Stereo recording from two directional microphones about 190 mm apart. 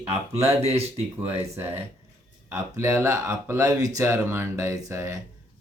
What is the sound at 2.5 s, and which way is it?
Mantra, 15° right (ahead or behind).